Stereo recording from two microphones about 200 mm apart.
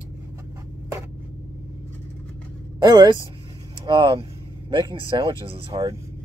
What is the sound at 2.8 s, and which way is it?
Speech, 20° right (ahead or behind).